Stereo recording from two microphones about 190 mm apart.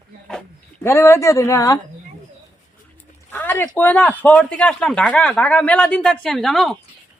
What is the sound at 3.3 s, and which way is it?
Speech, 10° left (ahead or behind).